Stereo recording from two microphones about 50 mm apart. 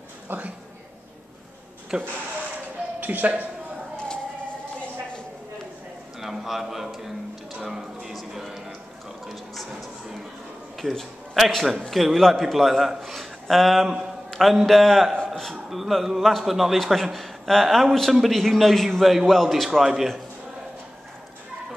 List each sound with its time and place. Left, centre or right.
0.3 s speech: right
1.9 s speech: centre
3.0 s speech: right
6.1 s a man's voice: centre
7.6 s music: centre
10.8 s a man's voice: centre
13.8 s a man's voice: centre